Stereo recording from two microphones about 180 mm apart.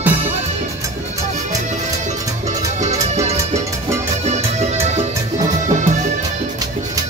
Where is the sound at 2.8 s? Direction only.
40° right (ahead or behind).